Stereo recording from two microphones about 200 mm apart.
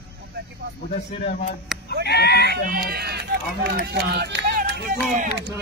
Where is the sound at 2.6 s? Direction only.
50° right (ahead or behind).